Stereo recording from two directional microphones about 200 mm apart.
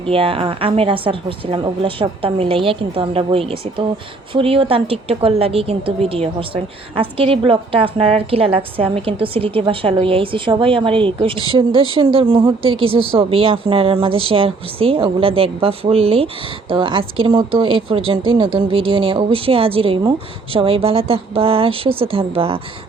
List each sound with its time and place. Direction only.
0.0 s a woman's voice: 25° right (ahead or behind)